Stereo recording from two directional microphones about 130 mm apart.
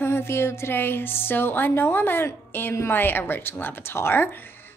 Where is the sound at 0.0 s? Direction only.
20° left (ahead or behind).